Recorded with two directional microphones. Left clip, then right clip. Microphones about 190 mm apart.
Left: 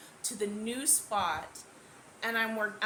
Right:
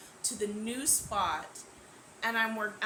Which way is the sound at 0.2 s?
20° left (ahead or behind).